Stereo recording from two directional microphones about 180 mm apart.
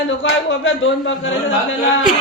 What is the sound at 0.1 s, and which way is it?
A man's voice, 90° left.